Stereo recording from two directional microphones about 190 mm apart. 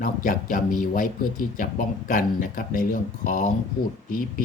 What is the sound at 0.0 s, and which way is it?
Speech, 45° left (ahead or behind).